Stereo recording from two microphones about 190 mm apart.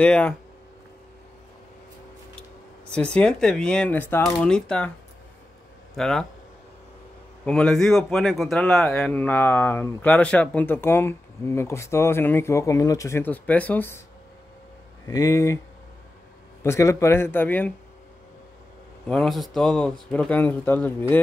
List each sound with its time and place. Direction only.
0.0 s speech: 5° left (ahead or behind)
2.9 s speech: 5° left (ahead or behind)
5.9 s speech: 5° left (ahead or behind)
7.4 s a man's voice: 5° left (ahead or behind)
15.0 s a man's voice: 15° left (ahead or behind)
16.6 s a man's voice: 15° left (ahead or behind)
19.0 s speech: centre (ahead or behind)